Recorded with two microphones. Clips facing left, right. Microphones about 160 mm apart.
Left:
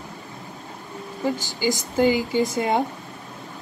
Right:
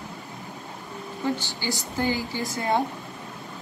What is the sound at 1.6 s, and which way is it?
Speech, 15° left (ahead or behind).